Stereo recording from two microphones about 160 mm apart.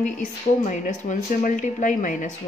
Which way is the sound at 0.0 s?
50° left (ahead or behind).